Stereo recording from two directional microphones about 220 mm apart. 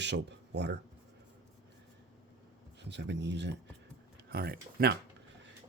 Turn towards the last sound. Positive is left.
turn(degrees=-45)  # may be behind; listen again after turning